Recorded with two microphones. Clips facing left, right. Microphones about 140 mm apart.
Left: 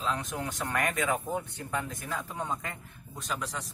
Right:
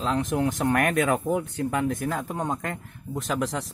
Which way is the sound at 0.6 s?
65° right (ahead or behind).